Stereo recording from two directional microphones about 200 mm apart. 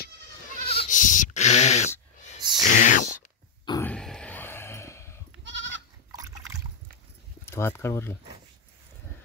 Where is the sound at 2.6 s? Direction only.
40° left (ahead or behind).